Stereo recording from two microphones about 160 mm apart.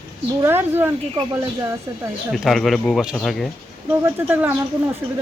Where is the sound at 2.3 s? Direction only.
Centre (ahead or behind).